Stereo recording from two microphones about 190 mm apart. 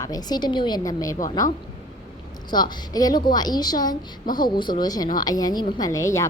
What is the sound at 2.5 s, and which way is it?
A woman's voice, 20° left (ahead or behind).